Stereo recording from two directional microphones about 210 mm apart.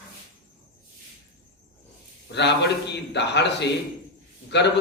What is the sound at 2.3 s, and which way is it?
A man's voice, 55° left (ahead or behind).